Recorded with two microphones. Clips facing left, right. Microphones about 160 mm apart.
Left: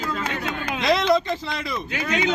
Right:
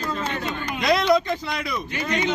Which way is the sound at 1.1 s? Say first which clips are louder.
Right 1 dB; 30° left (ahead or behind).